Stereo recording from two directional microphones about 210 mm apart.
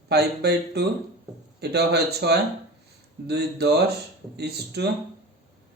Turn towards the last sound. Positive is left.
turn(degrees=-50)  # may be behind; listen again after turning